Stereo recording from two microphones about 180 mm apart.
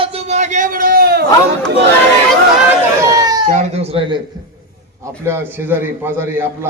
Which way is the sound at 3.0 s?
20° right (ahead or behind).